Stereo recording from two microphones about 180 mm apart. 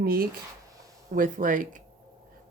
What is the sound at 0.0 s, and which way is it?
Speech, 55° right (ahead or behind).